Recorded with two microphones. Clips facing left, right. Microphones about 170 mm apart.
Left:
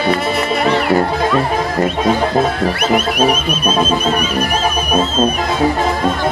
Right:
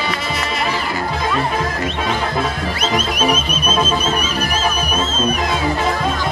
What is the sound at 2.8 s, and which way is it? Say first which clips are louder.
Music: left 5 dB; 65° left (ahead or behind).